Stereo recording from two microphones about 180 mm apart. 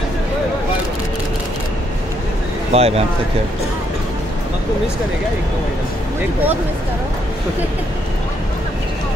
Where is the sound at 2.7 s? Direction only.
35° right (ahead or behind).